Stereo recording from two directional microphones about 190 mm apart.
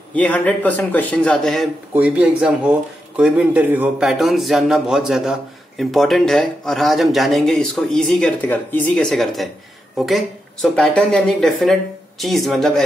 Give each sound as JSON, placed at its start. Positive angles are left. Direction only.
{"t": 0.1, "sound": "a man's voice", "side_deg": 5}